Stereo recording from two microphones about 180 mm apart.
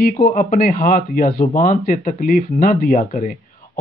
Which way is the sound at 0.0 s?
50° left (ahead or behind).